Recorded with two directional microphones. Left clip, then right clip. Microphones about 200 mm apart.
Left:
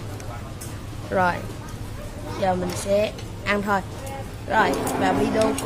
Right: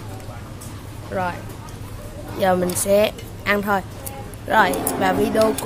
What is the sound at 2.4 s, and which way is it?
A woman's voice, 30° right (ahead or behind).